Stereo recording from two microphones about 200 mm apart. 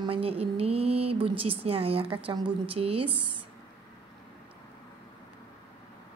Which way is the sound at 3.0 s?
5° right (ahead or behind).